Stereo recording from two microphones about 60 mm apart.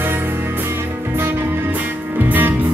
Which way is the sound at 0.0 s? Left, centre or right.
Right.